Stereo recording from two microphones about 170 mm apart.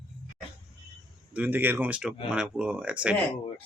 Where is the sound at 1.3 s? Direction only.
10° right (ahead or behind).